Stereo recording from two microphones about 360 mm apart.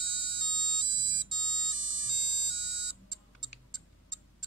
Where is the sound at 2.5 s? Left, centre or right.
Right.